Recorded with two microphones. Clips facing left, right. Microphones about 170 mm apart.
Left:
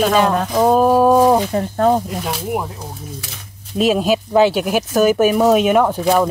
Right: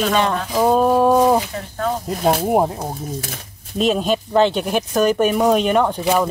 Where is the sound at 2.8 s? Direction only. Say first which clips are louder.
Right 5 dB; 50° right (ahead or behind).